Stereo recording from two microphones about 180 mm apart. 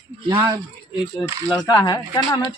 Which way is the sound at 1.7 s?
20° left (ahead or behind).